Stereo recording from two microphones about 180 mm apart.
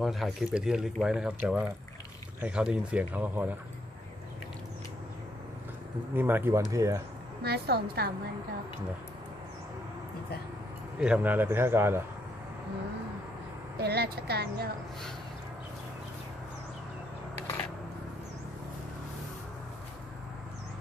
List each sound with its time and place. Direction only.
0.0 s speech: centre (ahead or behind)
6.1 s speech: 10° right (ahead or behind)
7.4 s a woman's voice: 65° right (ahead or behind)
11.0 s speech: 10° right (ahead or behind)
13.7 s a woman's voice: 60° right (ahead or behind)